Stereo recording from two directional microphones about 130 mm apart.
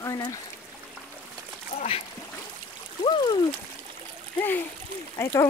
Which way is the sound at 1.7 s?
55° left (ahead or behind).